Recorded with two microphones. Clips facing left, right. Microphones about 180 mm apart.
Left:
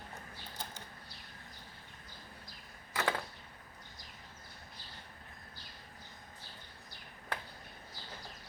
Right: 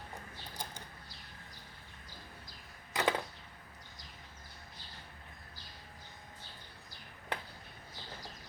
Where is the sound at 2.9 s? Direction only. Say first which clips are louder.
Right 3 dB; 15° right (ahead or behind).